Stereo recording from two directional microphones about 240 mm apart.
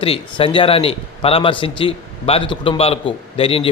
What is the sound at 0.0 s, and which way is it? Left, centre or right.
A man's voice, left.